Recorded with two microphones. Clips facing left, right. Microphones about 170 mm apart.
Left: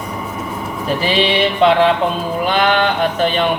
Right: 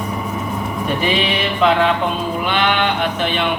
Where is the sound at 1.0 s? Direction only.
30° left (ahead or behind).